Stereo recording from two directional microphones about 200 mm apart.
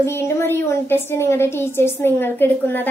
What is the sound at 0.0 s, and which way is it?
A child's voice, 15° left (ahead or behind).